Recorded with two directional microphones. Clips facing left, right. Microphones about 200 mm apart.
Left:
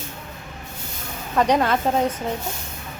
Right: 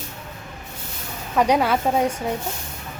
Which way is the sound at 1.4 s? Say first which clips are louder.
Even; 10° right (ahead or behind).